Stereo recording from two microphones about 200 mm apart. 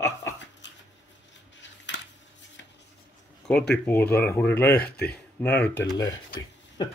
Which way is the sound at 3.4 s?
5° left (ahead or behind).